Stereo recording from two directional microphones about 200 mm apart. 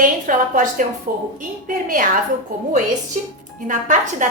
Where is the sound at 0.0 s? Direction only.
40° right (ahead or behind).